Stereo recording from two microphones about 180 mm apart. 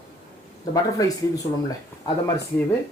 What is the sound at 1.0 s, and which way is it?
Speech, 20° left (ahead or behind).